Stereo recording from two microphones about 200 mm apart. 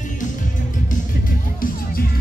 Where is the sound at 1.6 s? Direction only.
45° left (ahead or behind).